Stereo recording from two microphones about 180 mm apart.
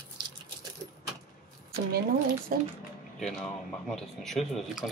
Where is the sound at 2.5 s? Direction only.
55° right (ahead or behind).